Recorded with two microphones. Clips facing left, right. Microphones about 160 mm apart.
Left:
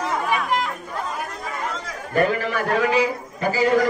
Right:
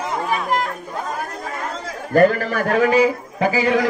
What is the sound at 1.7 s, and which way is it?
A man's voice, 35° right (ahead or behind).